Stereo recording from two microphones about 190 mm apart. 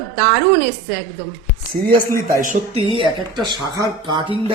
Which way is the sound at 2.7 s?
30° right (ahead or behind).